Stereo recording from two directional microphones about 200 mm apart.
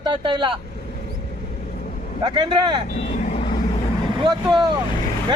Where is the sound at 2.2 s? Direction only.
25° right (ahead or behind).